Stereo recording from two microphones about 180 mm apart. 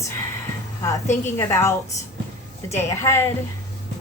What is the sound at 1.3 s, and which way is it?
Speech, 15° left (ahead or behind).